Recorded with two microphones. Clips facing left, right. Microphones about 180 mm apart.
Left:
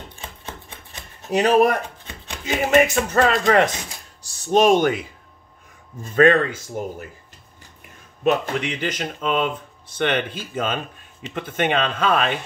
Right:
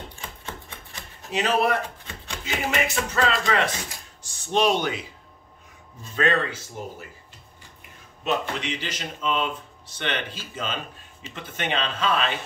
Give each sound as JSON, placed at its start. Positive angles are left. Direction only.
{"t": 1.3, "sound": "speech", "side_deg": 40}
{"t": 4.2, "sound": "speech", "side_deg": 40}
{"t": 6.0, "sound": "speech", "side_deg": 50}
{"t": 8.2, "sound": "speech", "side_deg": 55}